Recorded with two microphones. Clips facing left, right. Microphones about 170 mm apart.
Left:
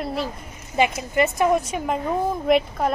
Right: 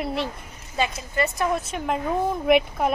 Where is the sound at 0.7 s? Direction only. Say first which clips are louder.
Left 5 dB; 20° left (ahead or behind).